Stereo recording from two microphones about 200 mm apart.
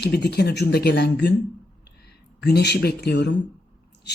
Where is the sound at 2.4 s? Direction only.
55° left (ahead or behind).